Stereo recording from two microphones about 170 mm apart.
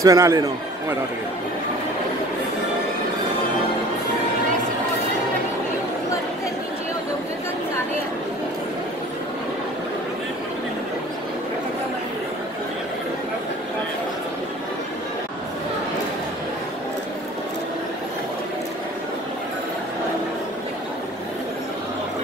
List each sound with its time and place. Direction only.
0.0 s a man's voice: 20° right (ahead or behind)